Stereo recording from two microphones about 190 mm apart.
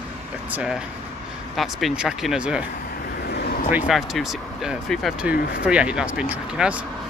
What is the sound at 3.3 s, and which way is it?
Vehicle, 55° left (ahead or behind).